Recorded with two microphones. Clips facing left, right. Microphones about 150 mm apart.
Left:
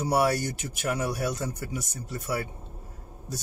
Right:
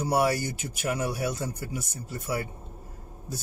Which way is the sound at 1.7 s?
70° left (ahead or behind).